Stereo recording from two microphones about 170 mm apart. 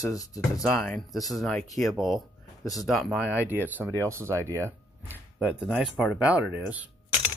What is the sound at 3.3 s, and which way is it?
Speech, 10° right (ahead or behind).